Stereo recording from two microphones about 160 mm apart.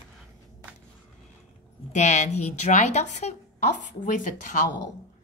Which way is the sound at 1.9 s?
45° left (ahead or behind).